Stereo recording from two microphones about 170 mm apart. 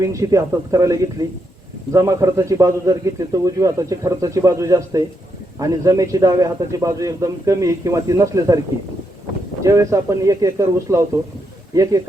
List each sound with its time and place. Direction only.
0.0 s a man's voice: 20° right (ahead or behind)
9.6 s a man's voice: 20° right (ahead or behind)